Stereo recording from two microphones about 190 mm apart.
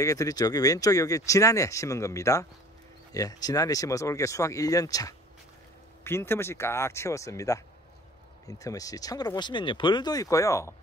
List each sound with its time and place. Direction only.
0.0 s speech: 15° left (ahead or behind)